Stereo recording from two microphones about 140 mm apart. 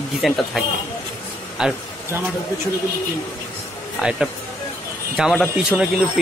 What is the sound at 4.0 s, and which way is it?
Speech, 5° right (ahead or behind).